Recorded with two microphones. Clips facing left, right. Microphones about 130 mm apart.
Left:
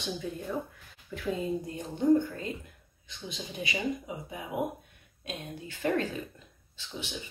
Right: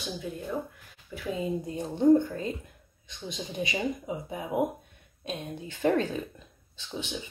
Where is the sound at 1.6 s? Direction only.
25° right (ahead or behind).